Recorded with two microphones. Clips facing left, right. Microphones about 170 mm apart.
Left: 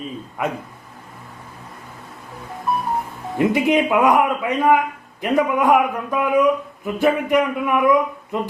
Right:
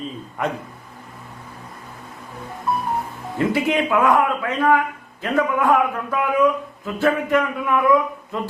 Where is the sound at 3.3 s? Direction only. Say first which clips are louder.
Left 3 dB; 20° left (ahead or behind).